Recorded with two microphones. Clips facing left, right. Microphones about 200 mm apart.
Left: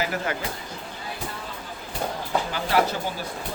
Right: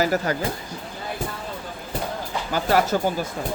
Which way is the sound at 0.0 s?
40° right (ahead or behind).